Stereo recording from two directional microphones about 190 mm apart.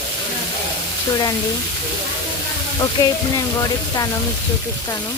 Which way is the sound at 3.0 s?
15° left (ahead or behind).